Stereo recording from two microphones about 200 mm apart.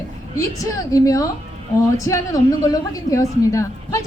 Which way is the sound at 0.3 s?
15° left (ahead or behind).